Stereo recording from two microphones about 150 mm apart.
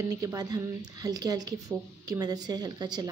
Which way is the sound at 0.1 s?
25° right (ahead or behind).